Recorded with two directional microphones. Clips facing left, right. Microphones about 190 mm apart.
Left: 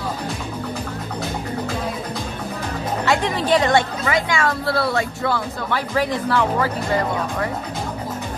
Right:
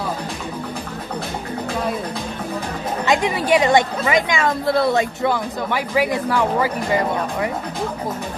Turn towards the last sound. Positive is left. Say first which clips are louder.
# right 1 dB
turn(degrees=-10)  # may be behind; listen again after turning